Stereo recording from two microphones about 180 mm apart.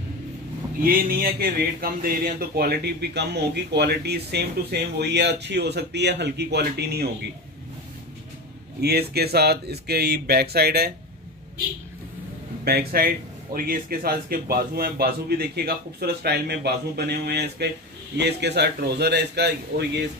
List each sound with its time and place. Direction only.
0.8 s speech: 50° right (ahead or behind)
8.8 s speech: 60° right (ahead or behind)
12.6 s a man's voice: 55° right (ahead or behind)